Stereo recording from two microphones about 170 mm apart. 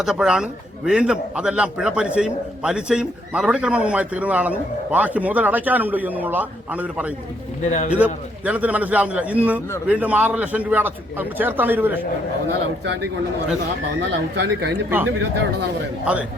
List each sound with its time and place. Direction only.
0.0 s a man's voice: 5° right (ahead or behind)
14.3 s speech: 85° right
14.8 s a man's voice: 10° right (ahead or behind)